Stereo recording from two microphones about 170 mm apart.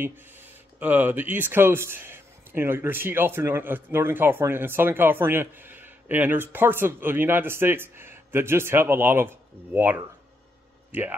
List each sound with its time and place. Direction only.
0.7 s speech: 10° right (ahead or behind)